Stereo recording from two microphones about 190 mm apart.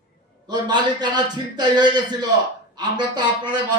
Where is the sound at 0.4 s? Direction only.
25° right (ahead or behind).